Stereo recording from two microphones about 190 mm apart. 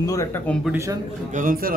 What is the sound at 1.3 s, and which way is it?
Speech, 45° right (ahead or behind).